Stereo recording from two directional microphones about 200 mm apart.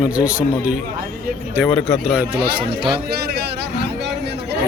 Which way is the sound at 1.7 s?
5° left (ahead or behind).